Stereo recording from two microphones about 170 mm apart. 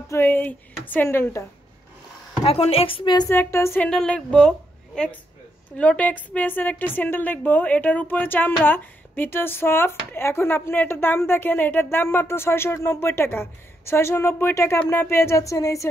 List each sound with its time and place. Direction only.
0.1 s a woman's voice: 10° left (ahead or behind)
2.4 s a woman's voice: 35° left (ahead or behind)
3.3 s a woman's voice: 15° left (ahead or behind)